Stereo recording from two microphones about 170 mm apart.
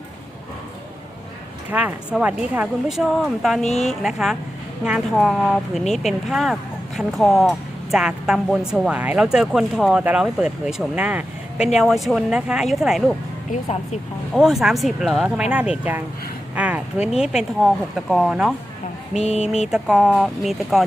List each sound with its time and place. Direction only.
1.7 s speech: 10° right (ahead or behind)
13.5 s speech: 40° left (ahead or behind)
14.3 s speech: 5° right (ahead or behind)
19.1 s speech: 40° left (ahead or behind)
19.7 s speech: 5° right (ahead or behind)